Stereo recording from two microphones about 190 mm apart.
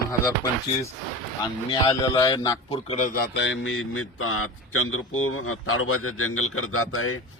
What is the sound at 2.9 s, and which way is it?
Speech, 45° left (ahead or behind).